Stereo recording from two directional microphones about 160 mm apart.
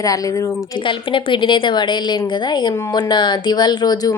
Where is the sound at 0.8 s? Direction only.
30° left (ahead or behind).